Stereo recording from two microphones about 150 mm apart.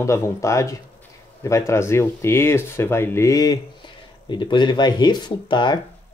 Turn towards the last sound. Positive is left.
turn(degrees=30)  # may be behind; listen again after turning